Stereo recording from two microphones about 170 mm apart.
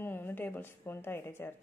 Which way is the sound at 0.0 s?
10° left (ahead or behind).